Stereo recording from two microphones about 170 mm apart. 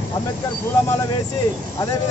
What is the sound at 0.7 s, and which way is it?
Speech, 15° left (ahead or behind).